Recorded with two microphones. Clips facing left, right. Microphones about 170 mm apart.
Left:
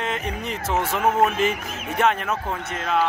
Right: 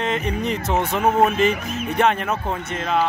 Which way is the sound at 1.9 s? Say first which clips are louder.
Right 1 dB; centre (ahead or behind).